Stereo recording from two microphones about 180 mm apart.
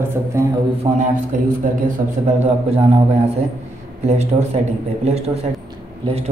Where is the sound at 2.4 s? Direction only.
35° right (ahead or behind).